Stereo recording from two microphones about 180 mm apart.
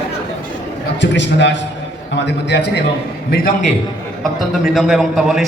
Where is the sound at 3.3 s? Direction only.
50° left (ahead or behind).